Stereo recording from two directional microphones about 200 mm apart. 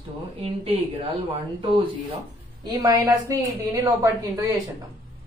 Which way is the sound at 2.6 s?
20° right (ahead or behind).